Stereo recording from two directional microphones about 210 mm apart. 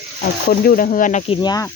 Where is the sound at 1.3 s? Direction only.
20° left (ahead or behind).